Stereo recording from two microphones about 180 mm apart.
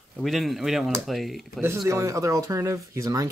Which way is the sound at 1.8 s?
15° right (ahead or behind).